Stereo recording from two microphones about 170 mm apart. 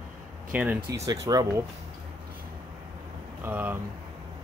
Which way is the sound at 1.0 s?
20° right (ahead or behind).